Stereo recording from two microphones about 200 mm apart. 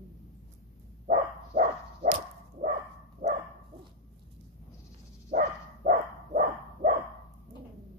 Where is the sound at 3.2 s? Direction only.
40° right (ahead or behind).